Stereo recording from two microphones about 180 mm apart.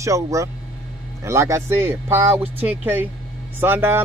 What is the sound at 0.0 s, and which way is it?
A man's voice, 15° right (ahead or behind).